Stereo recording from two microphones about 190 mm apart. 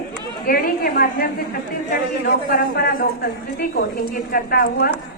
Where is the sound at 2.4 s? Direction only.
55° left (ahead or behind).